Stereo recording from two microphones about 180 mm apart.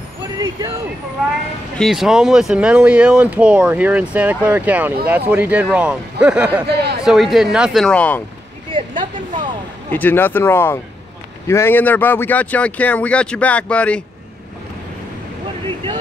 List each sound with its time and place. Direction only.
0.4 s speech: 20° right (ahead or behind)
1.8 s speech: centre (ahead or behind)
6.7 s speech: 65° right (ahead or behind)
7.0 s speech: centre (ahead or behind)
8.7 s a sound: 25° right (ahead or behind)
9.8 s speech: 10° left (ahead or behind)